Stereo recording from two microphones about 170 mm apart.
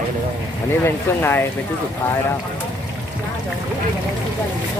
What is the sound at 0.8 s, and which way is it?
Speech, 15° left (ahead or behind).